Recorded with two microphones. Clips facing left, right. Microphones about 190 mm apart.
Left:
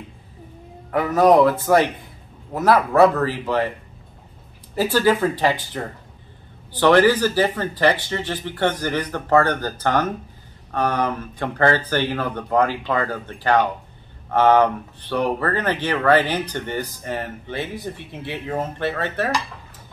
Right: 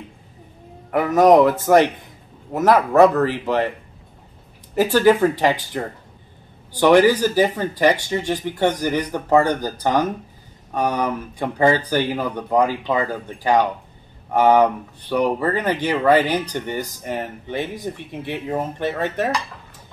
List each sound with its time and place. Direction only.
0.9 s speech: 15° right (ahead or behind)
4.7 s speech: 15° right (ahead or behind)